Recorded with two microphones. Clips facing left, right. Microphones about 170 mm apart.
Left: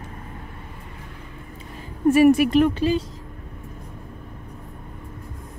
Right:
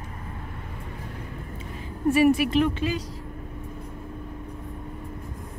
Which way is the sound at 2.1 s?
45° left (ahead or behind).